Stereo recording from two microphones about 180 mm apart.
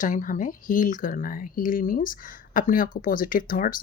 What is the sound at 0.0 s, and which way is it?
Speech, 45° left (ahead or behind).